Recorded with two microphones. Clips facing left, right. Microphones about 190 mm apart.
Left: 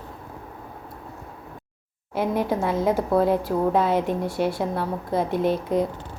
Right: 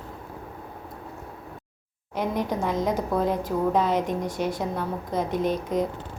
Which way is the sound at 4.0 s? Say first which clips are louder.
Left 3 dB; 15° right (ahead or behind).